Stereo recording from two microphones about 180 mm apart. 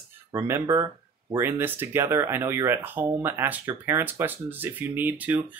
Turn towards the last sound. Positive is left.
turn(degrees=-10)  # may be behind; listen again after turning